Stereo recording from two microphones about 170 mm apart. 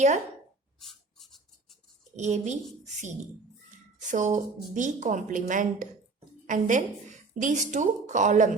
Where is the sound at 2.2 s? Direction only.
45° right (ahead or behind).